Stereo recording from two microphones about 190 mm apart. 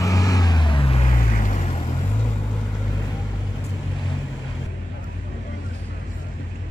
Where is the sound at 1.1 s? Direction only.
40° left (ahead or behind).